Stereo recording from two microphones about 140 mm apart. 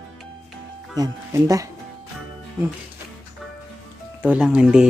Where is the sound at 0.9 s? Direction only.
25° right (ahead or behind).